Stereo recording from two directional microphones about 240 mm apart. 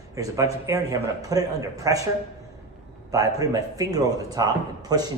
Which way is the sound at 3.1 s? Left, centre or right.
Centre.